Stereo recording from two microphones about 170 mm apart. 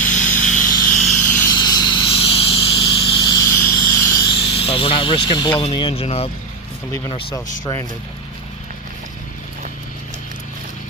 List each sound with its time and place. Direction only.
0.0 s vehicle: 50° left (ahead or behind)
1.3 s vehicle: 10° left (ahead or behind)
1.5 s vehicle: 25° left (ahead or behind)
4.4 s speech: 35° left (ahead or behind)
7.3 s speech: 20° left (ahead or behind)